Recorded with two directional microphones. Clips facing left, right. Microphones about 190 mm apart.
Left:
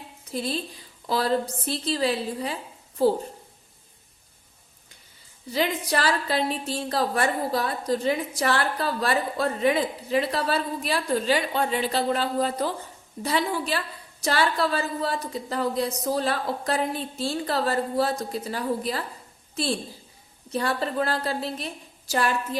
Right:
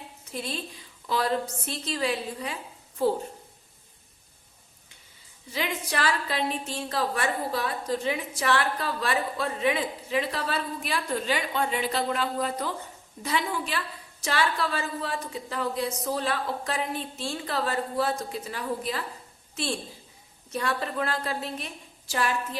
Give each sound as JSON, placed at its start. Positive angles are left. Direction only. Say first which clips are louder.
{"t": 0.3, "sound": "a woman's voice", "louder": "left 5 dB", "side_deg": 35}
{"t": 5.5, "sound": "a woman's voice", "louder": "left 6 dB", "side_deg": 35}
{"t": 20.5, "sound": "a woman's voice", "louder": "left 3 dB", "side_deg": 35}